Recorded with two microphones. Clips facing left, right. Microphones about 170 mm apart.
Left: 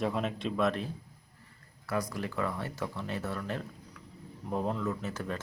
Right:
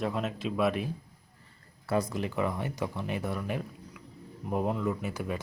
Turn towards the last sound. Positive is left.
turn(degrees=-10)  # may be behind; listen again after turning